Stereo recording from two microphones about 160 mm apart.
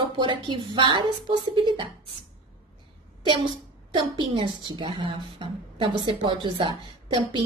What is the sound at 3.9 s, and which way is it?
A woman's voice, 30° right (ahead or behind).